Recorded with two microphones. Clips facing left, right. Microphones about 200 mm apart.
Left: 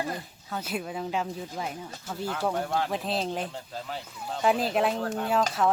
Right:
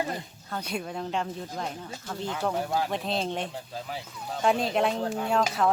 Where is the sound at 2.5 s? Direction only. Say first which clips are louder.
Right 1 dB; 5° right (ahead or behind).